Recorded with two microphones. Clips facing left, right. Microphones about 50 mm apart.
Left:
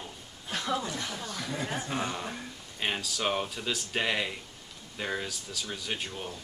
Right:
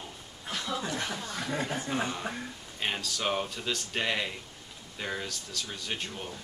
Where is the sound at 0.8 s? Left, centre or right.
Right.